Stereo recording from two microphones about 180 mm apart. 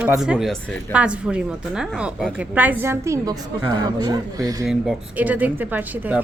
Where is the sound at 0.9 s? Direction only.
5° right (ahead or behind).